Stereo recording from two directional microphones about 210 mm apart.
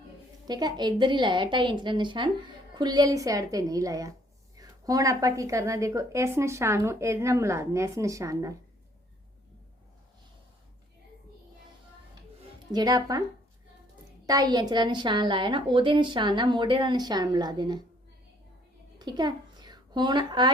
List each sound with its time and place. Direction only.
0.4 s a woman's voice: 20° right (ahead or behind)
12.7 s a woman's voice: 15° right (ahead or behind)
14.3 s a woman's voice: 20° right (ahead or behind)
18.9 s a child's voice: 20° right (ahead or behind)